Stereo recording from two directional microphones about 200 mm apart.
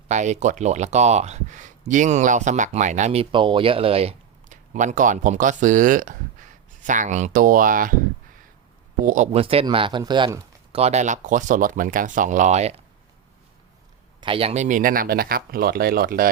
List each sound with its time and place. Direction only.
0.1 s speech: 35° right (ahead or behind)
9.0 s speech: 40° right (ahead or behind)
14.2 s speech: 25° right (ahead or behind); by 16.3 s 45° right (ahead or behind)